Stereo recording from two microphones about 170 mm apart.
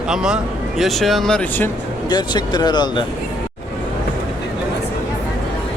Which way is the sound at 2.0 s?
25° left (ahead or behind).